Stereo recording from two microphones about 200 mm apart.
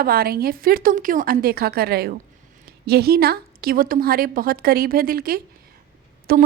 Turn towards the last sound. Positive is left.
turn(degrees=-50)  # may be behind; listen again after turning